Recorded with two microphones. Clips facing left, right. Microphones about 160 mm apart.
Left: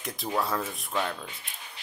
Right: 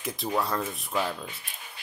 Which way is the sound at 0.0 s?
Centre (ahead or behind).